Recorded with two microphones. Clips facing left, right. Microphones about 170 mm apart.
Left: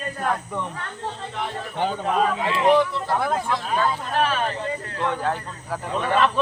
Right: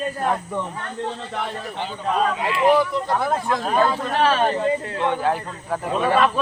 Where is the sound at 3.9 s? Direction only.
75° right (ahead or behind).